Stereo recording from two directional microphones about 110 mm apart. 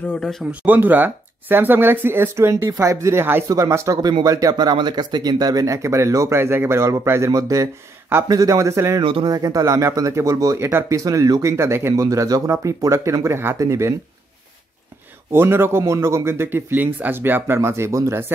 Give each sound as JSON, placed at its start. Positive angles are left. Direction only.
{"t": 0.2, "sound": "speech", "side_deg": 5}
{"t": 0.5, "sound": "speech", "side_deg": -15}
{"t": 9.0, "sound": "speech", "side_deg": -50}
{"t": 9.3, "sound": "speech", "side_deg": -35}
{"t": 15.3, "sound": "speech", "side_deg": -20}